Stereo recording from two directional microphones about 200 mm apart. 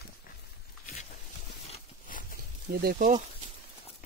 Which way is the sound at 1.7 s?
40° left (ahead or behind).